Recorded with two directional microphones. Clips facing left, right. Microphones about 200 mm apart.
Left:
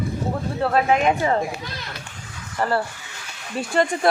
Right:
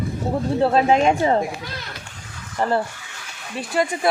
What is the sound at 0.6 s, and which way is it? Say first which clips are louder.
Speech: right 3 dB; 25° right (ahead or behind).